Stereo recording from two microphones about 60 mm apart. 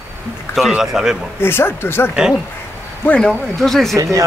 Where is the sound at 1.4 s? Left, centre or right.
Left.